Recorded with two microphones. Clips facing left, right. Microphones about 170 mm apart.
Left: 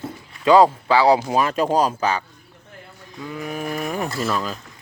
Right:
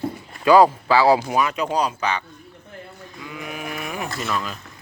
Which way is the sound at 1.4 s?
40° left (ahead or behind).